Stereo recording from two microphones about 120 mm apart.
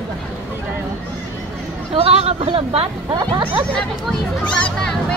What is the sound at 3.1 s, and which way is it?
Speech, 35° right (ahead or behind).